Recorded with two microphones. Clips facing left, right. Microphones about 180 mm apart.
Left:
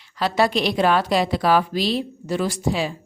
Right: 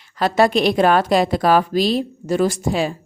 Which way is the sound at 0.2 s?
50° right (ahead or behind).